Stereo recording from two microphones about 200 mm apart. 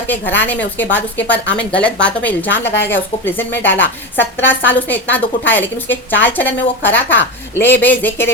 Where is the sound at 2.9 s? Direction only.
10° left (ahead or behind).